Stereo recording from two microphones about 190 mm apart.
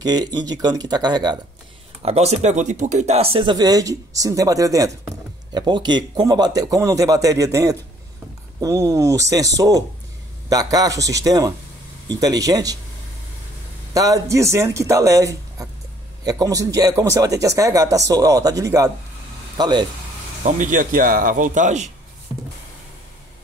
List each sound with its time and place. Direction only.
0.0 s speech: 20° right (ahead or behind)
2.0 s speech: 35° right (ahead or behind); by 12.7 s 20° right (ahead or behind)
13.9 s speech: 20° right (ahead or behind)
20.4 s speech: 40° right (ahead or behind)